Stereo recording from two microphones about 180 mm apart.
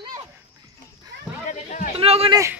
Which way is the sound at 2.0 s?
35° right (ahead or behind).